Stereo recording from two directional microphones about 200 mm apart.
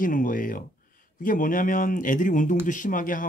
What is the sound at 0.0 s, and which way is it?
Speech, 40° left (ahead or behind).